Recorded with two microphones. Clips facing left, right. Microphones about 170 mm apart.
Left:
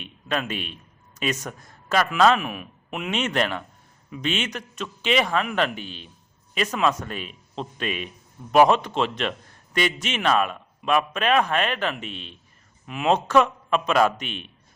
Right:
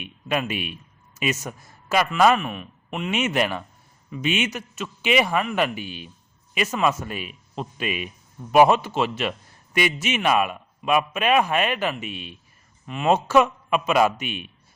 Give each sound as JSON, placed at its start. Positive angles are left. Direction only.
{"t": 0.0, "sound": "a man's voice", "side_deg": -10}
{"t": 2.4, "sound": "speech", "side_deg": 5}
{"t": 3.1, "sound": "a man's voice", "side_deg": -10}
{"t": 12.8, "sound": "a man's voice", "side_deg": 5}